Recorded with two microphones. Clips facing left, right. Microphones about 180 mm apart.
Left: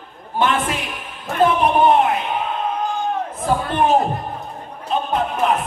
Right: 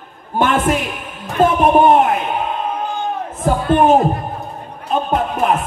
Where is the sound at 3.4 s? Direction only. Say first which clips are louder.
Right 6 dB; 45° right (ahead or behind).